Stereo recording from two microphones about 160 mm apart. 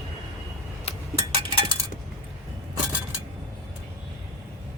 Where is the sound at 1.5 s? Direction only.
30° right (ahead or behind).